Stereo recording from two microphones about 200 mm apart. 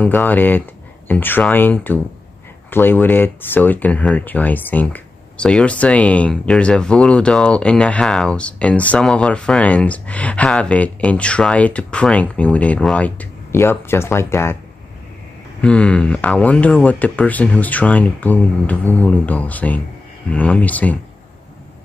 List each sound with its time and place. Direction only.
0.0 s speech: 10° left (ahead or behind)
15.6 s speech: 5° left (ahead or behind)